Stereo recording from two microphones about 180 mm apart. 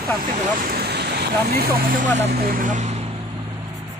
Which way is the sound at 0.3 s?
50° right (ahead or behind).